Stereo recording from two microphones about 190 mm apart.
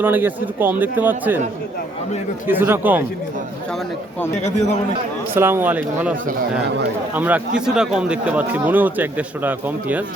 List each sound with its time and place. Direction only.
0.0 s speech: 10° right (ahead or behind)
2.5 s speech: 10° right (ahead or behind)
4.4 s a man's voice: 35° left (ahead or behind)
5.3 s speech: 10° right (ahead or behind)